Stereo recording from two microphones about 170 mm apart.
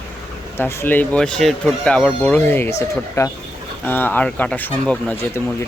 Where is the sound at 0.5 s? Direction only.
15° left (ahead or behind).